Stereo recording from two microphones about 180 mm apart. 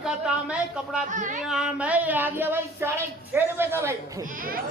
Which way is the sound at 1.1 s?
45° right (ahead or behind).